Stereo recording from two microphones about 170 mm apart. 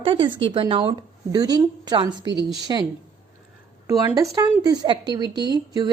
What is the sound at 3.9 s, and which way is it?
A woman's voice, 20° right (ahead or behind).